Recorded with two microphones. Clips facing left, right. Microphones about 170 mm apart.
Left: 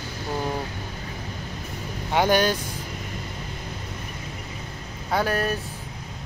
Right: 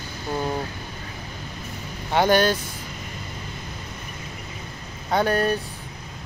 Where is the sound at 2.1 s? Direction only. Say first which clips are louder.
Right 2 dB; 10° left (ahead or behind).